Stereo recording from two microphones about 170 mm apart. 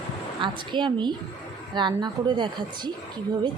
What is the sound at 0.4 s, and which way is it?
Speech, 30° right (ahead or behind).